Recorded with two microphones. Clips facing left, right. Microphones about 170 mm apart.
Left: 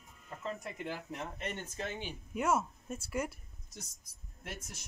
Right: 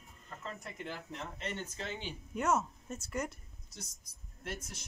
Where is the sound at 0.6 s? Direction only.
10° left (ahead or behind).